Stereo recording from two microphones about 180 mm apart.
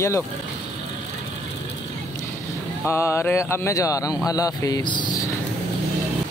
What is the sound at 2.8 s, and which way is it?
Speech, 15° left (ahead or behind).